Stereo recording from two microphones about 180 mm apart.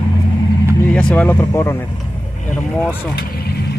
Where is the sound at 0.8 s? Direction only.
5° left (ahead or behind).